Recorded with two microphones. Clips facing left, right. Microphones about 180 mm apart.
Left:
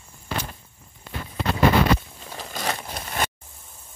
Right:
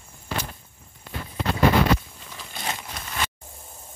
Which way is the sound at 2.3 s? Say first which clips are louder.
Left 4 dB; 40° left (ahead or behind).